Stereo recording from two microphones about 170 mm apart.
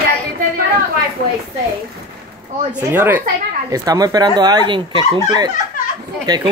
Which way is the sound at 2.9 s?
10° right (ahead or behind).